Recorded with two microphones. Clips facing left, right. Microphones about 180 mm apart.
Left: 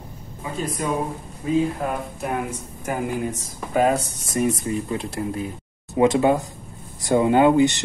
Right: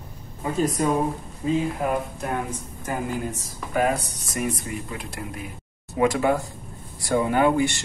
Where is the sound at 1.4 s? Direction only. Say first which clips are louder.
Left 2 dB; 25° right (ahead or behind).